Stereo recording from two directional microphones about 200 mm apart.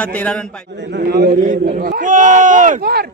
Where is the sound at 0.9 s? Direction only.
50° right (ahead or behind).